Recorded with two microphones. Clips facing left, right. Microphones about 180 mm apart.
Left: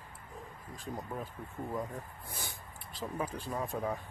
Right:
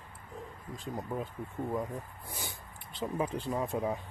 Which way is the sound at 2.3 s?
15° right (ahead or behind).